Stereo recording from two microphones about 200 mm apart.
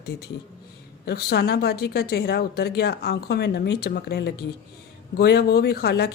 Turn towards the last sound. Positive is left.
turn(degrees=55)  # may be behind; listen again after turning